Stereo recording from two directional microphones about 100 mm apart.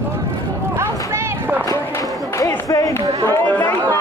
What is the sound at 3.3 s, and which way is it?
Chatter, 15° left (ahead or behind).